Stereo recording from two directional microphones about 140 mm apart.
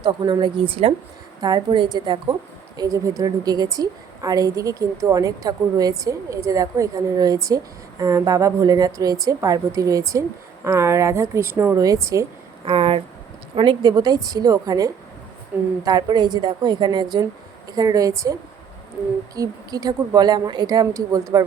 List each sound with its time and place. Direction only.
0.0 s a woman's voice: 35° right (ahead or behind)
1.4 s a woman's voice: 30° right (ahead or behind)
12.6 s a woman's voice: 40° right (ahead or behind); by 18.3 s 25° right (ahead or behind)
19.4 s a woman's voice: 25° right (ahead or behind)